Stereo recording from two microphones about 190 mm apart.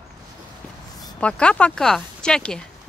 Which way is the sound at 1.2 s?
5° left (ahead or behind).